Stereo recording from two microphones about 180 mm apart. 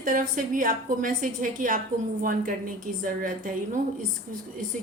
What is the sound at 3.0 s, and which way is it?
Speech, 50° right (ahead or behind).